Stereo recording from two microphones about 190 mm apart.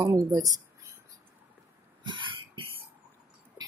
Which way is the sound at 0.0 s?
20° right (ahead or behind).